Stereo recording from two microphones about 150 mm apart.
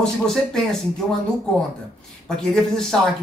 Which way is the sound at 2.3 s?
5° left (ahead or behind).